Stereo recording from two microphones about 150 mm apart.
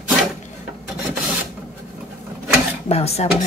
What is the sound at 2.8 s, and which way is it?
Dishes, 45° left (ahead or behind).